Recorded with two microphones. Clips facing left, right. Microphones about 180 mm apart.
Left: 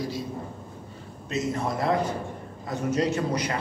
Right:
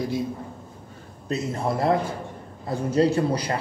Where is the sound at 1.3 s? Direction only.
30° right (ahead or behind).